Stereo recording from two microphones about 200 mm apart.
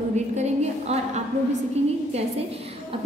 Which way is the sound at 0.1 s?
35° right (ahead or behind).